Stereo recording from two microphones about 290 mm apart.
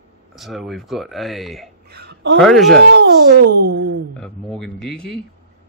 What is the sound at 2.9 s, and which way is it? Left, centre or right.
Speech, right.